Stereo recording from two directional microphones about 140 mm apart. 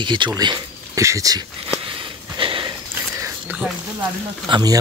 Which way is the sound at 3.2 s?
10° right (ahead or behind).